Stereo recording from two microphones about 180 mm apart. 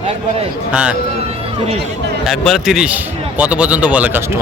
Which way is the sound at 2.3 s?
Centre (ahead or behind).